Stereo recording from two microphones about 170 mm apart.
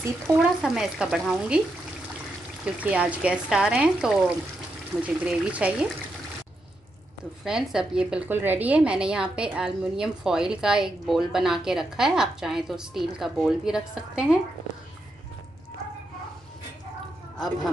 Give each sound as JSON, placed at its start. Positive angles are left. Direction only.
{"t": 0.0, "sound": "speech", "side_deg": -15}
{"t": 0.6, "sound": "a woman's voice", "side_deg": -5}
{"t": 2.6, "sound": "a woman's voice", "side_deg": -5}
{"t": 7.4, "sound": "a woman's voice", "side_deg": -5}